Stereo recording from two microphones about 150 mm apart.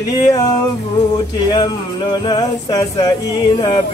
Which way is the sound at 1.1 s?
30° left (ahead or behind).